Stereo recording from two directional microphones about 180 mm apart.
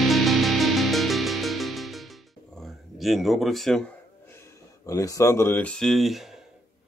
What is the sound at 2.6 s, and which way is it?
Speech, centre (ahead or behind).